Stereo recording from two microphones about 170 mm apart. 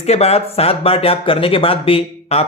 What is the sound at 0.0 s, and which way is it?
Speech, 40° left (ahead or behind).